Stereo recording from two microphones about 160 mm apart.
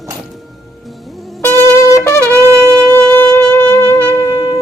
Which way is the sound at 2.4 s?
20° right (ahead or behind).